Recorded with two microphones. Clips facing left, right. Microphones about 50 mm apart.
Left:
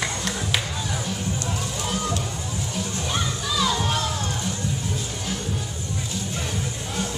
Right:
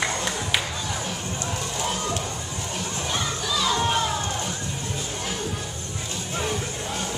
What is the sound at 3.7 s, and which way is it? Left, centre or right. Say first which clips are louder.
Children playing: right 1 dB; centre.